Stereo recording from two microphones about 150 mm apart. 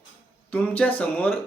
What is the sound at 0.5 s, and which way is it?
Speech, 10° left (ahead or behind).